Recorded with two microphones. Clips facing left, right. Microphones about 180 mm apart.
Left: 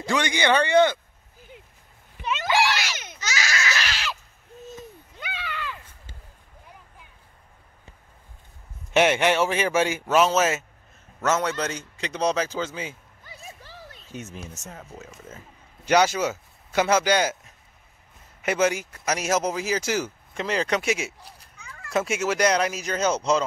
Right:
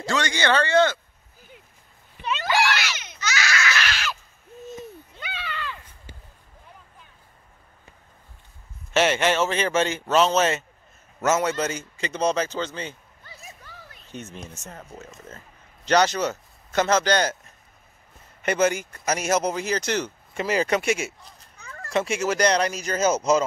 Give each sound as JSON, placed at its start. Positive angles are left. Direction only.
{"t": 0.1, "sound": "speech", "side_deg": 15}
{"t": 2.1, "sound": "a sound", "side_deg": 15}
{"t": 2.8, "sound": "baby cry", "side_deg": 45}
{"t": 5.2, "sound": "a sound", "side_deg": 10}
{"t": 8.9, "sound": "speech", "side_deg": 15}
{"t": 11.1, "sound": "speech", "side_deg": -5}
{"t": 13.4, "sound": "a sound", "side_deg": 30}
{"t": 14.0, "sound": "a man's voice", "side_deg": 5}
{"t": 18.4, "sound": "speech", "side_deg": 0}